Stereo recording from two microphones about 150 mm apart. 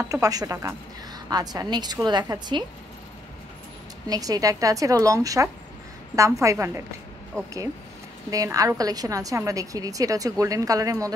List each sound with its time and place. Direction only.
0.0 s a woman's voice: 20° right (ahead or behind)
4.1 s a woman's voice: 25° right (ahead or behind)
8.3 s a woman's voice: 20° right (ahead or behind)